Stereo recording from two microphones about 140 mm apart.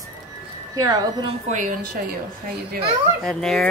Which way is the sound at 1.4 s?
65° right (ahead or behind).